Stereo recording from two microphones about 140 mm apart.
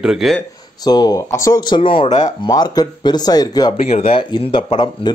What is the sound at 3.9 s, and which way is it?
Speech, 45° left (ahead or behind).